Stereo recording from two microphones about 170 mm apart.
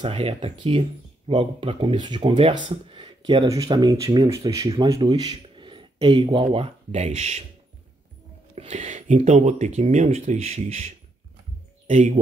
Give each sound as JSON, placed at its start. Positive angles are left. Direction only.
{"t": 0.0, "sound": "speech", "side_deg": -35}
{"t": 2.7, "sound": "a sound", "side_deg": -30}
{"t": 3.4, "sound": "speech", "side_deg": -20}
{"t": 8.5, "sound": "speech", "side_deg": -40}